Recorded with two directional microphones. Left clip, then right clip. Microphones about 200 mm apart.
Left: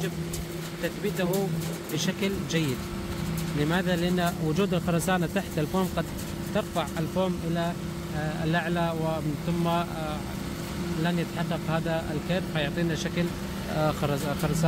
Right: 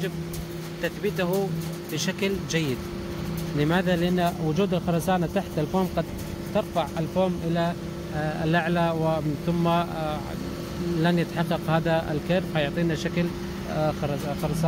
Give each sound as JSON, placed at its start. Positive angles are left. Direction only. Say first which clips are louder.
{"t": 0.8, "sound": "speech", "louder": "right 3 dB", "side_deg": -20}
{"t": 8.2, "sound": "speech", "louder": "right 4 dB", "side_deg": -15}
{"t": 13.7, "sound": "speech", "louder": "even", "side_deg": 5}